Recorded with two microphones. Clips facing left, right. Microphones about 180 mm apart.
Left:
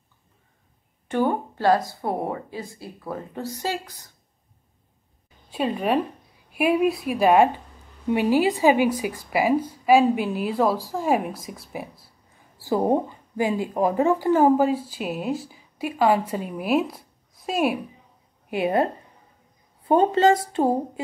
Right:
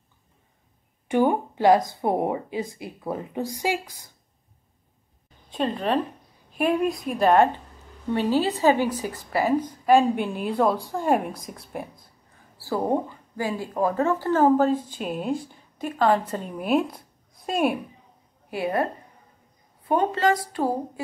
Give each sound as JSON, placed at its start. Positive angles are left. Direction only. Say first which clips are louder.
{"t": 1.0, "sound": "speech", "louder": "right 2 dB", "side_deg": -15}
{"t": 5.5, "sound": "speech", "louder": "left 1 dB", "side_deg": 10}
{"t": 12.5, "sound": "speech", "louder": "left 3 dB", "side_deg": 15}
{"t": 18.5, "sound": "a woman's voice", "louder": "left 3 dB", "side_deg": 20}
{"t": 19.9, "sound": "a woman's voice", "louder": "left 4 dB", "side_deg": 25}